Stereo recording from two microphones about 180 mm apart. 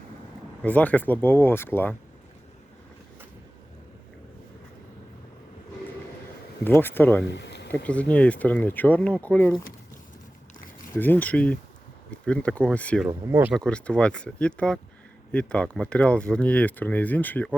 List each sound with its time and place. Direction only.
0.6 s speech: 10° left (ahead or behind)
6.7 s speech: 10° left (ahead or behind)
7.3 s a sound: 70° left (ahead or behind)
7.9 s speech: 5° left (ahead or behind)
10.9 s speech: 10° left (ahead or behind)
13.1 s speech: 10° right (ahead or behind)
13.6 s speech: 5° left (ahead or behind)